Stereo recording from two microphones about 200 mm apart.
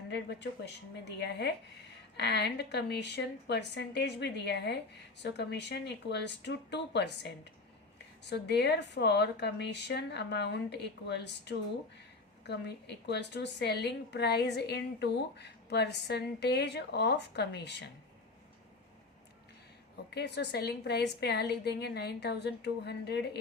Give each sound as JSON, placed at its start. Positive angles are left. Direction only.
{"t": 0.1, "sound": "a woman's voice", "side_deg": 60}
{"t": 20.1, "sound": "a woman's voice", "side_deg": 55}